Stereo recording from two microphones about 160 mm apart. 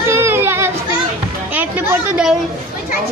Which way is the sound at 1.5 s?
10° right (ahead or behind).